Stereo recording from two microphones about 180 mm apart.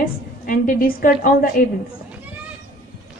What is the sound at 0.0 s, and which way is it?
A woman's voice, 50° left (ahead or behind).